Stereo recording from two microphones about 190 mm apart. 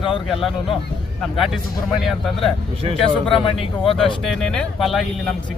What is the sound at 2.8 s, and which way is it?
Speech, 30° right (ahead or behind).